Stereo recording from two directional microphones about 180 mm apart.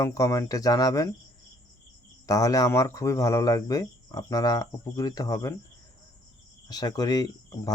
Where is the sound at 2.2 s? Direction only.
20° left (ahead or behind).